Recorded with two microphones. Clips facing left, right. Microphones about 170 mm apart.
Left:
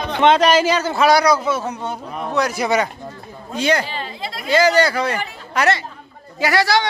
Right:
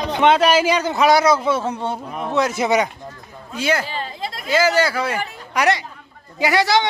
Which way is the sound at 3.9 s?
45° right (ahead or behind).